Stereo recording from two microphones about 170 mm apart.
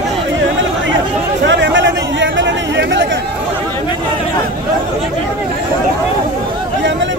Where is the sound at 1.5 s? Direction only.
90° right.